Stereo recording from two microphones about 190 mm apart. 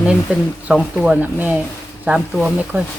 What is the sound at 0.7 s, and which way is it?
Speech, 5° right (ahead or behind).